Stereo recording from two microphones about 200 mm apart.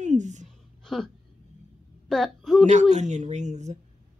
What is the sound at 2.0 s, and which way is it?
Speech, centre (ahead or behind).